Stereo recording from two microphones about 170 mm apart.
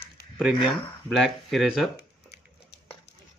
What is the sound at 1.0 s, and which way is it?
Speech, centre (ahead or behind).